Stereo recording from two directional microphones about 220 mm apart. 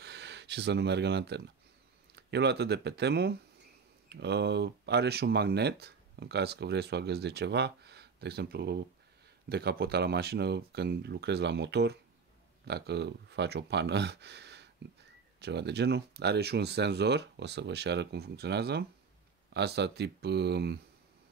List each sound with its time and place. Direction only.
0.0 s speech: 50° right (ahead or behind)